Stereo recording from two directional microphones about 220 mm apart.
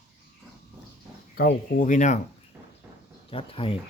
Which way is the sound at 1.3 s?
40° left (ahead or behind).